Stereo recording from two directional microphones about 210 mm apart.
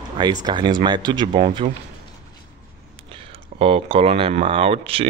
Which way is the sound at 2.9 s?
25° right (ahead or behind).